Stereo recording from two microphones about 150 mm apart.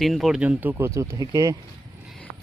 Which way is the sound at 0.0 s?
Centre (ahead or behind).